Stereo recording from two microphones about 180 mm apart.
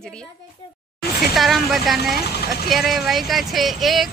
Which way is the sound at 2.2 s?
60° left (ahead or behind).